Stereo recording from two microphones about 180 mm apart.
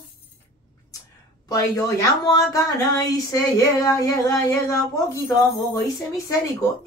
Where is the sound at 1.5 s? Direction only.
20° left (ahead or behind).